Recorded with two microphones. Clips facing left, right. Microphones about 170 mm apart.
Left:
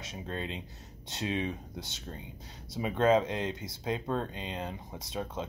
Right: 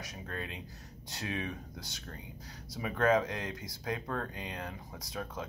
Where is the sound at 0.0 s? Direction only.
25° left (ahead or behind).